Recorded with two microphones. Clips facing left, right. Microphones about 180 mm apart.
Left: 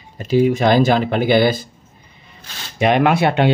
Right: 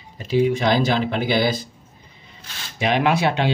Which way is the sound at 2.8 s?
55° left (ahead or behind).